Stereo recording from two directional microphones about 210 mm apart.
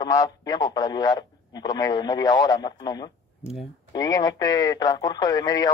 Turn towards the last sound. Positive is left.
turn(degrees=20)  # may be behind; listen again after turning